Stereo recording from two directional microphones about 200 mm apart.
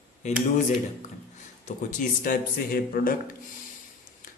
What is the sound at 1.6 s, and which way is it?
Speech, 40° left (ahead or behind).